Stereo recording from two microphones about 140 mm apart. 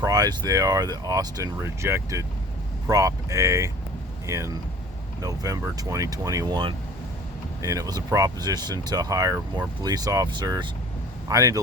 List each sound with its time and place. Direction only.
0.0 s speech: 25° right (ahead or behind)